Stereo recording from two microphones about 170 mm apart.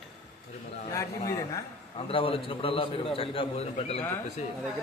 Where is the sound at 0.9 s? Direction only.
20° left (ahead or behind).